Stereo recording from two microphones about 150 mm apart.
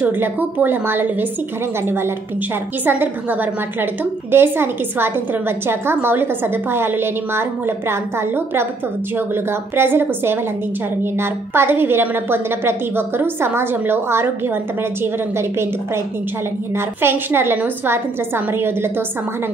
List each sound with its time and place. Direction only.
0.0 s a woman's voice: 15° right (ahead or behind)